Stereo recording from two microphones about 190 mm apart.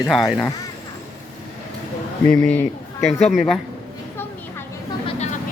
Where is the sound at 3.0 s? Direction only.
35° left (ahead or behind).